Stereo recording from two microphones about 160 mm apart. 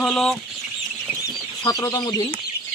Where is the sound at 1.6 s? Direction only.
25° left (ahead or behind).